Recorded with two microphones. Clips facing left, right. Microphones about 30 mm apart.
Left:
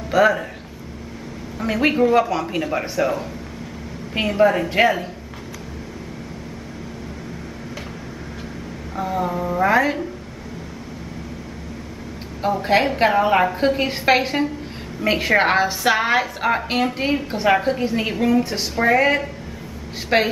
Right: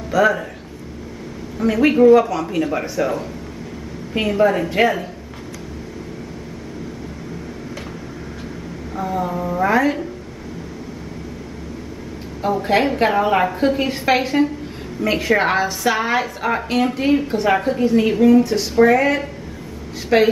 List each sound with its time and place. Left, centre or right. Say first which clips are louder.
0.1 s a woman's voice: even; centre
1.9 s a woman's voice: right 5 dB; centre
4.3 s a woman's voice: even; centre
8.9 s a woman's voice: even; centre
12.4 s a woman's voice: right 1 dB; centre
15.1 s a woman's voice: even; centre
20.1 s a woman's voice: right 3 dB; left